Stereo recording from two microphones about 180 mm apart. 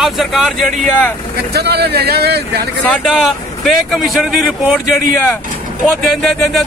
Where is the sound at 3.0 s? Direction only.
Centre (ahead or behind).